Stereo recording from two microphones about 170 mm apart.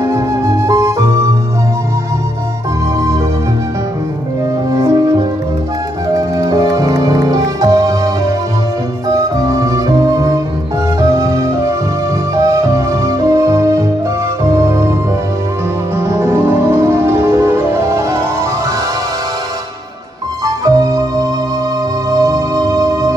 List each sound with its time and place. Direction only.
0.7 s music: 20° right (ahead or behind)
4.7 s music: 20° right (ahead or behind)
9.5 s music: 20° right (ahead or behind)
16.1 s music: 15° right (ahead or behind)
20.4 s music: 20° right (ahead or behind)